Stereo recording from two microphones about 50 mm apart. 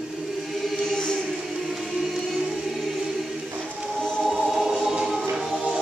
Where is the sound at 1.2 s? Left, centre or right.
Centre.